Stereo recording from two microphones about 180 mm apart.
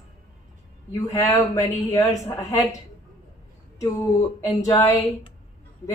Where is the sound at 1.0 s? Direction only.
20° left (ahead or behind).